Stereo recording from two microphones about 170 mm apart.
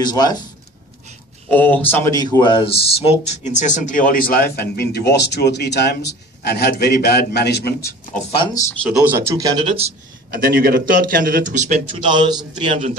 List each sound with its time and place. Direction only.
0.0 s speech: 25° left (ahead or behind)
1.5 s speech: 10° left (ahead or behind); by 8.2 s 60° left (ahead or behind)
9.0 s speech: 15° right (ahead or behind)
9.3 s a man's voice: 25° right (ahead or behind)
10.3 s a man's voice: 60° right (ahead or behind)
11.8 s a man's voice: 30° right (ahead or behind)